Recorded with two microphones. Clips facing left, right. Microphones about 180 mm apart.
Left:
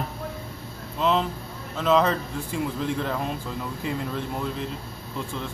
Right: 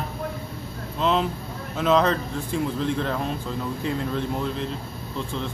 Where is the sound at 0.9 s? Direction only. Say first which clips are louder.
Right 1 dB; centre (ahead or behind).